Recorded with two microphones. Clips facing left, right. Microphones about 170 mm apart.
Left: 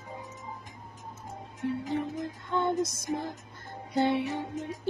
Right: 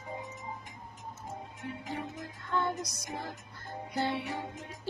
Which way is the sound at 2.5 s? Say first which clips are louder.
Left 4 dB; 20° left (ahead or behind).